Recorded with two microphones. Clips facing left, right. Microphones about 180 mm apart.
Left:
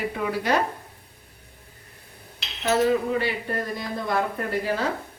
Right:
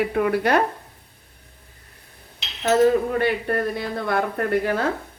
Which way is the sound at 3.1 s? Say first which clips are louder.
Right 5 dB; 60° right (ahead or behind).